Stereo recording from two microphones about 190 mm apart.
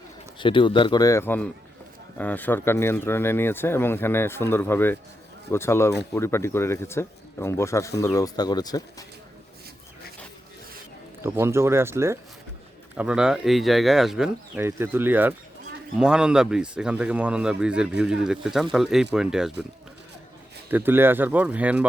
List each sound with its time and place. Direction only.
0.3 s speech: 25° left (ahead or behind)
11.2 s speech: 15° right (ahead or behind)
20.7 s speech: 10° right (ahead or behind)